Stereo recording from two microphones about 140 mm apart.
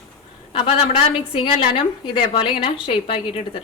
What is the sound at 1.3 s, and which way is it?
A woman's voice, 40° left (ahead or behind).